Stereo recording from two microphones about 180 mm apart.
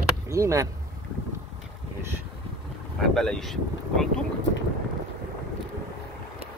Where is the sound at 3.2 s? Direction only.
Centre (ahead or behind).